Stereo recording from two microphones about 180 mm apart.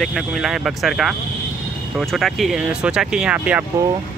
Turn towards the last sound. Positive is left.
turn(degrees=-5)  # may be behind; listen again after turning